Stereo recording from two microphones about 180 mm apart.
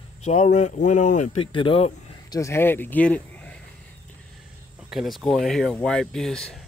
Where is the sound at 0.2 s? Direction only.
40° left (ahead or behind).